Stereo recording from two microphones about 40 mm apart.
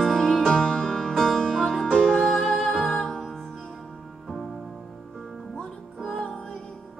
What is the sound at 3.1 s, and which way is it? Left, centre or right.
Music, centre.